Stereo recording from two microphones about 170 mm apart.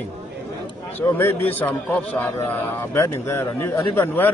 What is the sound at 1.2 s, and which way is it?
A man's voice, 10° left (ahead or behind).